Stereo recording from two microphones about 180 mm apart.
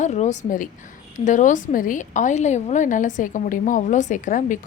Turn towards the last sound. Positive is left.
turn(degrees=45)  # may be behind; listen again after turning